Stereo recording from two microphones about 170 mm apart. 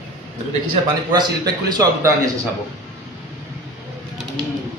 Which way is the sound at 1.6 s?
20° right (ahead or behind).